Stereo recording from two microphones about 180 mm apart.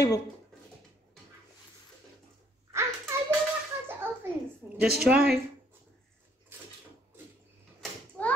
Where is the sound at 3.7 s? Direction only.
10° right (ahead or behind).